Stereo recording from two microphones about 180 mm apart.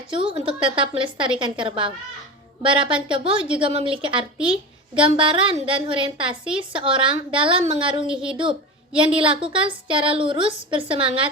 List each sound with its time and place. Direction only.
0.1 s a woman's voice: 30° right (ahead or behind)
8.0 s a woman's voice: 5° right (ahead or behind)
9.1 s a woman's voice: 30° right (ahead or behind)